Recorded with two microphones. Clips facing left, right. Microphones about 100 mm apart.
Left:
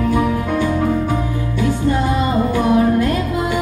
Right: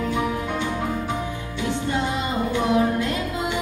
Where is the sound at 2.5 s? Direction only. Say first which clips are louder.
Left 5 dB; 20° right (ahead or behind).